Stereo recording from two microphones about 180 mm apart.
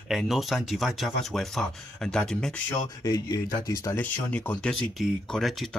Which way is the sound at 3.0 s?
20° left (ahead or behind).